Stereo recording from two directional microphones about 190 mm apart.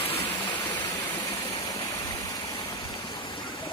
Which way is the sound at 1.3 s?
30° left (ahead or behind).